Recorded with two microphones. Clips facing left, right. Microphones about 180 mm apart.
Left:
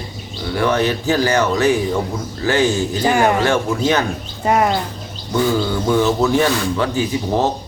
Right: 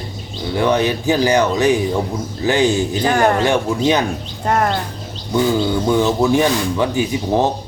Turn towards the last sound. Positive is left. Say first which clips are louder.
# right 1 dB
turn(degrees=-15)  # may be behind; listen again after turning